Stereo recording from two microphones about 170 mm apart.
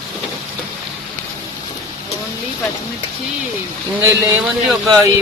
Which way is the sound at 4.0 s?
15° right (ahead or behind).